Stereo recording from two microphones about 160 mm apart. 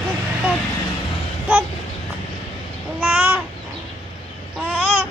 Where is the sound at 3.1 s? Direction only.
10° right (ahead or behind).